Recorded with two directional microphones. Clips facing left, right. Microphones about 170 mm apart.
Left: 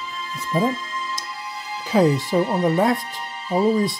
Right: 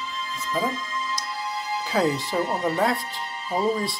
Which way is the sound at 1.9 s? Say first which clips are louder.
Left 6 dB; 20° left (ahead or behind).